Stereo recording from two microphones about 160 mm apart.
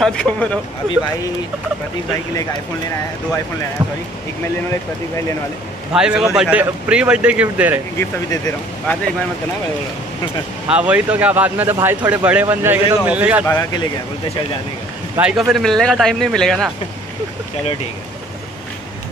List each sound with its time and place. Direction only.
0.0 s speech: 5° left (ahead or behind)
5.9 s speech: 5° right (ahead or behind)
8.0 s speech: 15° left (ahead or behind)
10.7 s speech: 10° right (ahead or behind)
13.5 s speech: 20° left (ahead or behind)
15.1 s speech: 5° right (ahead or behind)